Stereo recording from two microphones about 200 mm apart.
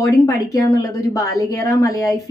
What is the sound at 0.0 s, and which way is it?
A woman's voice, 15° left (ahead or behind).